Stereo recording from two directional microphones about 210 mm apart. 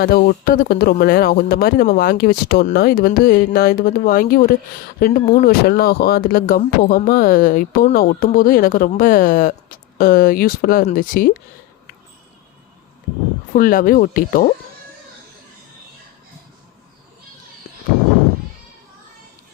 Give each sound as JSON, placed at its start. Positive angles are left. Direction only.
{"t": 0.0, "sound": "speech", "side_deg": 45}
{"t": 5.6, "sound": "speech", "side_deg": 50}
{"t": 13.5, "sound": "speech", "side_deg": 40}